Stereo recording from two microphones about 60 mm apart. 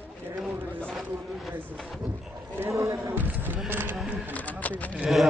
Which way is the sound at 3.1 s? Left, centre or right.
Right.